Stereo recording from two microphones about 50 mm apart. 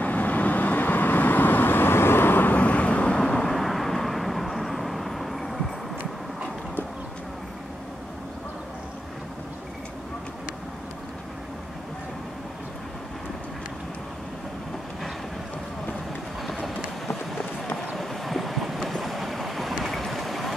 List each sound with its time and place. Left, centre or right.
0.0 s vehicle: left
2.5 s vehicle: left
3.2 s vehicle: centre
17.9 s train: centre
19.8 s vehicle: centre